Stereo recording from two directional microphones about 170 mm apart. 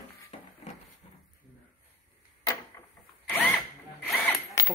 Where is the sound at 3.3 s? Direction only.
10° left (ahead or behind).